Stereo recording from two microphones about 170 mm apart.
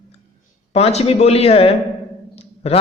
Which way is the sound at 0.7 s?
35° left (ahead or behind).